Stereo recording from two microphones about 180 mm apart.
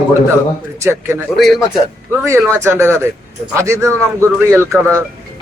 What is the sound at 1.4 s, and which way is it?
Speech, centre (ahead or behind).